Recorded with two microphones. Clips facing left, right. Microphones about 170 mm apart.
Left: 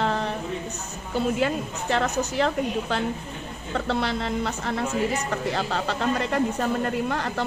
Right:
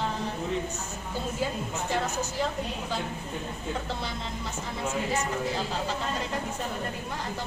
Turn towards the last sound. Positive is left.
turn(degrees=70)  # may be behind; listen again after turning